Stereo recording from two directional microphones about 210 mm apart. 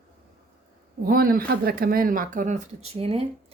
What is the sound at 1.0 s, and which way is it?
A woman's voice, 45° right (ahead or behind).